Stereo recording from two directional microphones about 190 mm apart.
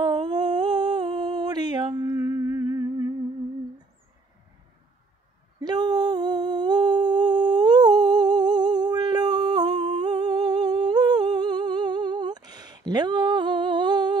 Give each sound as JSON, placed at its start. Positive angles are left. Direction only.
{"t": 0.0, "sound": "humming", "side_deg": -20}
{"t": 5.6, "sound": "humming", "side_deg": -20}